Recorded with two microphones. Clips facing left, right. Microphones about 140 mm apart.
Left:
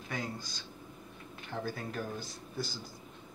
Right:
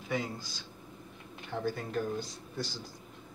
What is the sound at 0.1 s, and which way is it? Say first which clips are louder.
Speech: right 4 dB; centre (ahead or behind).